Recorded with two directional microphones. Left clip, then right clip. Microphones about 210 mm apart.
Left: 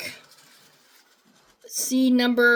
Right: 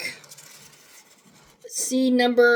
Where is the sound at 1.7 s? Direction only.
20° left (ahead or behind).